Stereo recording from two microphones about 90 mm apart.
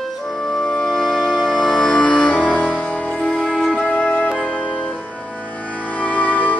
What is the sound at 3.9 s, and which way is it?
Music, 15° left (ahead or behind).